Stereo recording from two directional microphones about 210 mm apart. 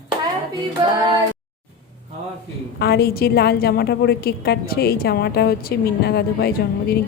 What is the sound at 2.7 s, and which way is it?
A woman's voice, 50° left (ahead or behind).